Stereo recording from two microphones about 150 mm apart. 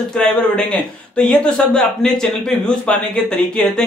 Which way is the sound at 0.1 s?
5° left (ahead or behind).